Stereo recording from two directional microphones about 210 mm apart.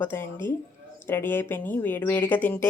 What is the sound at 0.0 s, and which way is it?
Speech, 10° left (ahead or behind).